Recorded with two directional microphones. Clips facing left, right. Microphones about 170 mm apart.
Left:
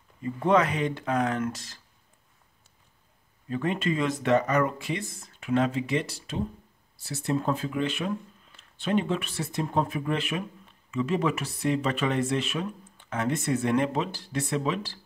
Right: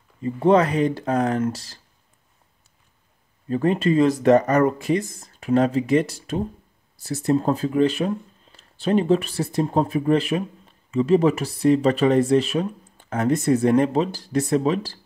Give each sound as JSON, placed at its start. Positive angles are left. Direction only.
{"t": 0.2, "sound": "speech", "side_deg": -30}
{"t": 3.4, "sound": "speech", "side_deg": -35}